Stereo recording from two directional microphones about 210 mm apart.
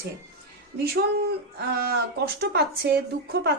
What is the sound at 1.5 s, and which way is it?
Speech, 50° right (ahead or behind).